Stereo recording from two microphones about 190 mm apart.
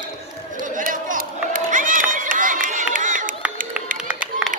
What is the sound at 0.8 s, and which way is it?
Run, 45° right (ahead or behind).